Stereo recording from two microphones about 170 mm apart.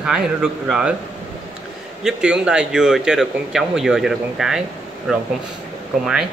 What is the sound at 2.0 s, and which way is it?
A man's voice, 5° right (ahead or behind).